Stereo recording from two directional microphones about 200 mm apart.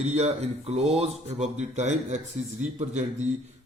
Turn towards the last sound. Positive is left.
turn(degrees=-35)  # may be behind; listen again after turning